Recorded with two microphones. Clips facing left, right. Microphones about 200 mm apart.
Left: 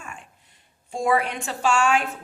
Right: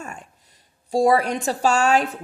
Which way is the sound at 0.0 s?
40° right (ahead or behind).